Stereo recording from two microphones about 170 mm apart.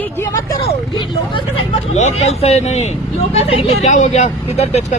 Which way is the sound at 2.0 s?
40° left (ahead or behind).